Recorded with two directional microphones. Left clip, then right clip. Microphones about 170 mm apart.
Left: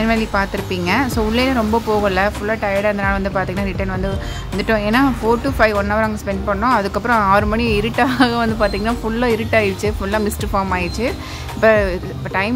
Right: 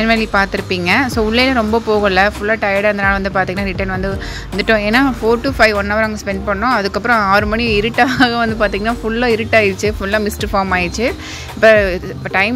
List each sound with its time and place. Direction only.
0.0 s a woman's voice: 25° right (ahead or behind)